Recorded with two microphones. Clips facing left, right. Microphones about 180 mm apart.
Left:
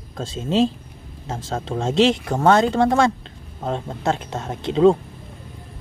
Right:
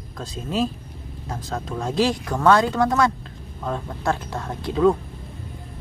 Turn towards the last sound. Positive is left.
turn(degrees=25)  # may be behind; listen again after turning